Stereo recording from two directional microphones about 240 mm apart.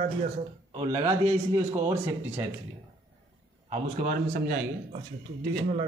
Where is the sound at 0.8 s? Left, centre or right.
Right.